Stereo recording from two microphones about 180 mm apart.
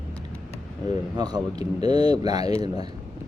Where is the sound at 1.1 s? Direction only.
20° right (ahead or behind).